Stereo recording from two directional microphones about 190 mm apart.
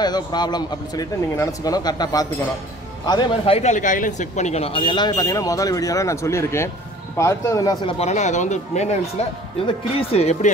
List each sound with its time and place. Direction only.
0.0 s speech: 20° left (ahead or behind)
8.0 s speech: 40° left (ahead or behind)